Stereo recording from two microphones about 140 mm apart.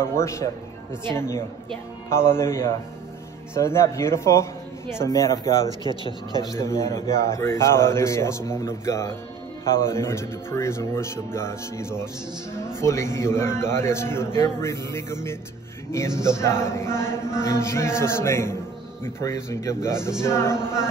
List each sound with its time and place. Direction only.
0.0 s a man's voice: 20° left (ahead or behind)